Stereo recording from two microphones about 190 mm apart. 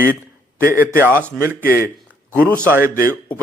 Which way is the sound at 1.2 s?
15° right (ahead or behind).